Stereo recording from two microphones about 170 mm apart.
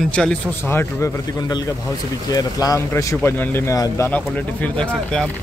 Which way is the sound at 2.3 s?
20° left (ahead or behind).